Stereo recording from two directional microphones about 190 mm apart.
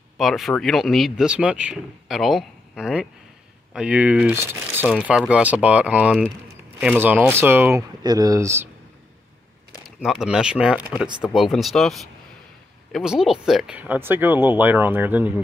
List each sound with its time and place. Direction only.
0.2 s speech: centre (ahead or behind)
9.8 s speech: centre (ahead or behind)